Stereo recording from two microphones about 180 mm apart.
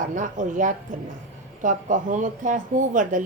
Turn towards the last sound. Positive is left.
turn(degrees=-45)  # may be behind; listen again after turning